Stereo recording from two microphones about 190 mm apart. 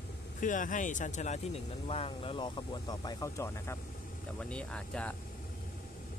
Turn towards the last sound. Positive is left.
turn(degrees=5)  # may be behind; listen again after turning